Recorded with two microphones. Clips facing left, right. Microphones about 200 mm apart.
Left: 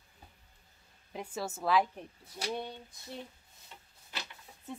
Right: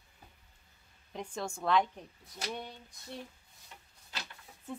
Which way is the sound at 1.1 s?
5° left (ahead or behind).